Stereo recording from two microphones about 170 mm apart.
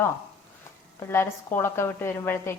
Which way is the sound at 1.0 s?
15° left (ahead or behind).